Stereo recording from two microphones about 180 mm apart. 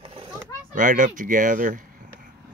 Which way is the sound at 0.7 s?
45° right (ahead or behind).